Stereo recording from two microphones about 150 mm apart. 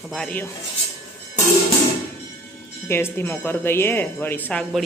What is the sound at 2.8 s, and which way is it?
A man's voice, 15° left (ahead or behind).